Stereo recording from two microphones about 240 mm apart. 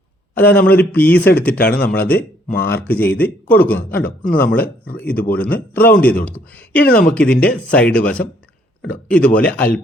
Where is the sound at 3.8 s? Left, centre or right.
Left.